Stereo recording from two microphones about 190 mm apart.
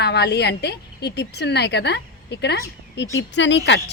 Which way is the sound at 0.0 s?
60° left (ahead or behind).